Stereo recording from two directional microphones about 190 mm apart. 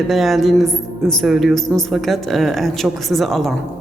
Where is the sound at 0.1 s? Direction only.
Centre (ahead or behind).